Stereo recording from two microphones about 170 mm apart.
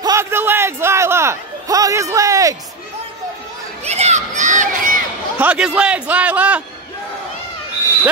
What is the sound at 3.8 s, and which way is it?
Speech, 40° right (ahead or behind).